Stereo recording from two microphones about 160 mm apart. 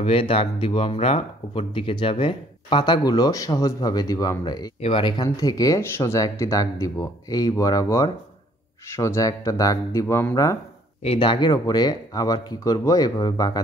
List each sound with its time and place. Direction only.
0.0 s speech: 35° left (ahead or behind); by 10.6 s 20° left (ahead or behind)
11.0 s speech: 35° left (ahead or behind)